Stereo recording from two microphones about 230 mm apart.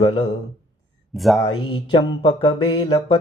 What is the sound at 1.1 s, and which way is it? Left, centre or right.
Speech, centre.